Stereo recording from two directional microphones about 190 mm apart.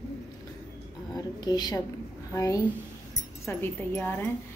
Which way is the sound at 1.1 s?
20° left (ahead or behind).